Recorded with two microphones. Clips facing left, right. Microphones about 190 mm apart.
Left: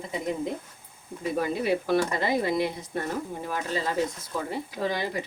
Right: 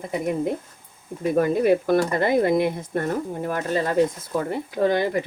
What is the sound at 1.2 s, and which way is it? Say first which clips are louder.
Speech: right 8 dB; 50° right (ahead or behind).